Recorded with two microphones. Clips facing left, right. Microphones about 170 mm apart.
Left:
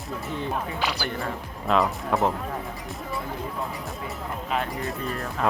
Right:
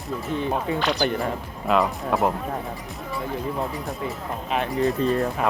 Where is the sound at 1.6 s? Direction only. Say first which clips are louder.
Right 2 dB; centre (ahead or behind).